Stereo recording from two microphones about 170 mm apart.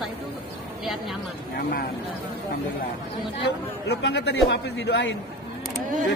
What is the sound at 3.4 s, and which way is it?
A man's voice, 80° left.